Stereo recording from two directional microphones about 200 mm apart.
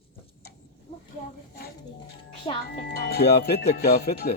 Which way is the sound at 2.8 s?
55° left (ahead or behind).